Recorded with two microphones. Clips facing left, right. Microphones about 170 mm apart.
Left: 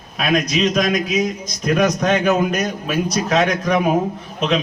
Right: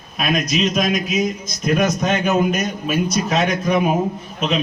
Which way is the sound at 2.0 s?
5° right (ahead or behind).